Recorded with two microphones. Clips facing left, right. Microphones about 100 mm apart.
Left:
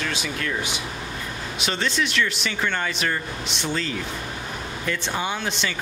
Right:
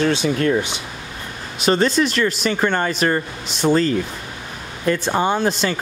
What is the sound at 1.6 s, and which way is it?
Speech, 40° right (ahead or behind).